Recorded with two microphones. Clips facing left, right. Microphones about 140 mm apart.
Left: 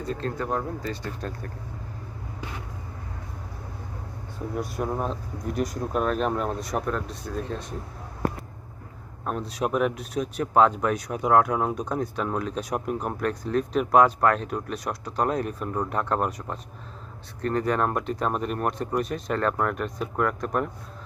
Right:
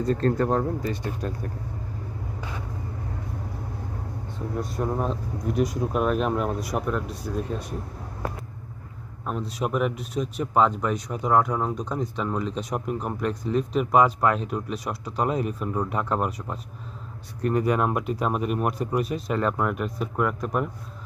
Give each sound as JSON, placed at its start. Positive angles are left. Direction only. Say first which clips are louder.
{"t": 0.0, "sound": "speech", "louder": "right 7 dB", "side_deg": -40}
{"t": 4.6, "sound": "speech", "louder": "right 1 dB", "side_deg": 0}
{"t": 9.2, "sound": "speech", "louder": "left 1 dB", "side_deg": 0}